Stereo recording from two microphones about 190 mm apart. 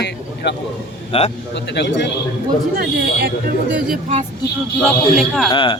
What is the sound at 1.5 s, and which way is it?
Speech, 65° left (ahead or behind).